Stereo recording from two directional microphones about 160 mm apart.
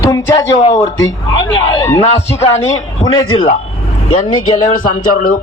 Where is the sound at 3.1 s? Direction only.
30° left (ahead or behind).